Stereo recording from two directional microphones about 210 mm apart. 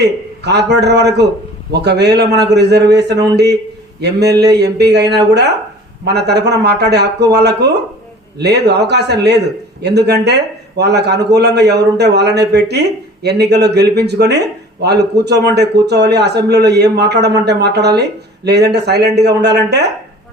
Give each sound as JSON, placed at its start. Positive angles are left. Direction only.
{"t": 0.0, "sound": "a man's voice", "side_deg": -50}